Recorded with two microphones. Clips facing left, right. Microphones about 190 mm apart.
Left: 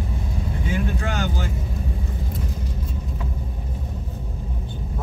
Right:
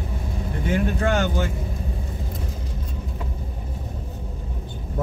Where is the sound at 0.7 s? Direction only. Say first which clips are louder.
Right 5 dB; 60° right (ahead or behind).